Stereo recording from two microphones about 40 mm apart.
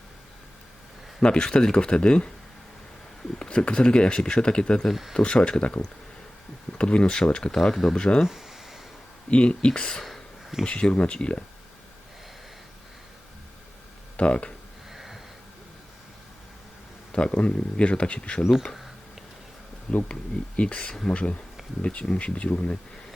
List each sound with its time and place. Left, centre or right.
1.4 s speech: centre
3.3 s speech: left
4.9 s speech: centre
5.1 s speech: left
7.5 s speech: centre
7.9 s speech: left
8.2 s a sound: centre
9.3 s speech: left
14.2 s speech: left
14.9 s a sound: centre
17.1 s speech: left
19.9 s speech: centre
20.6 s speech: left